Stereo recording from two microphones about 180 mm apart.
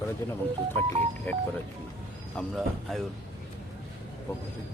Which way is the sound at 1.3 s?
10° left (ahead or behind).